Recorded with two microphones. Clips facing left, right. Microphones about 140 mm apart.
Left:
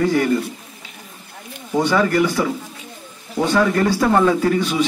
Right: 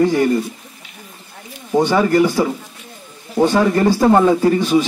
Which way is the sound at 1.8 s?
25° right (ahead or behind).